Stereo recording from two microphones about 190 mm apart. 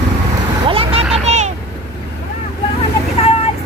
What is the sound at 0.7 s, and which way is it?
Vehicle, 30° right (ahead or behind).